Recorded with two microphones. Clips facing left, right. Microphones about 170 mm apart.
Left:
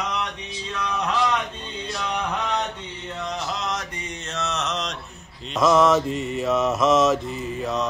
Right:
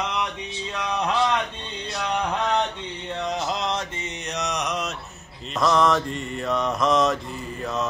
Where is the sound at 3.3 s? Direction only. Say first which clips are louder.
Right 2 dB; 30° right (ahead or behind); by 5.0 s 10° right (ahead or behind).